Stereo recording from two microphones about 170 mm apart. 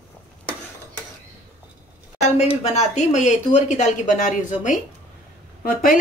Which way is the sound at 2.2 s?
40° left (ahead or behind).